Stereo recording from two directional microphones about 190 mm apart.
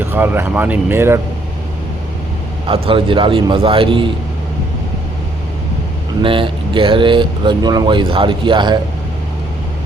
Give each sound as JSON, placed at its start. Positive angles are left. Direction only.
{"t": 0.0, "sound": "speech", "side_deg": -10}
{"t": 2.6, "sound": "speech", "side_deg": -30}
{"t": 6.2, "sound": "speech", "side_deg": -25}